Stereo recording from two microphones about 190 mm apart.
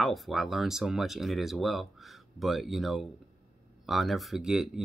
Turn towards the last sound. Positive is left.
turn(degrees=-5)  # may be behind; listen again after turning